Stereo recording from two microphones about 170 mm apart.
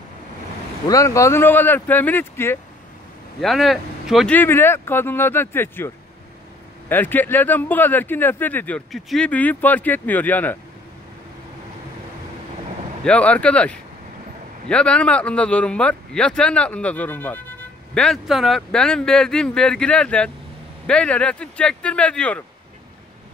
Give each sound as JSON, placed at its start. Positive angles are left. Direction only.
{"t": 0.8, "sound": "speech", "side_deg": 20}
{"t": 3.3, "sound": "speech", "side_deg": 0}
{"t": 4.4, "sound": "speech", "side_deg": 15}
{"t": 6.9, "sound": "speech", "side_deg": 10}
{"t": 13.0, "sound": "speech", "side_deg": 5}